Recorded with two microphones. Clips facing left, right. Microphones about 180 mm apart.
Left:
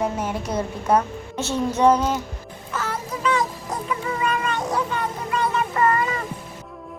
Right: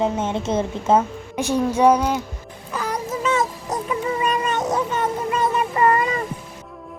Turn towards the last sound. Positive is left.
turn(degrees=-20)  # may be behind; listen again after turning